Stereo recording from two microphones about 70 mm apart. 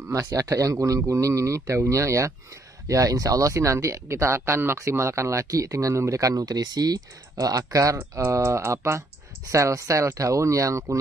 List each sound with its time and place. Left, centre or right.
0.3 s speech: right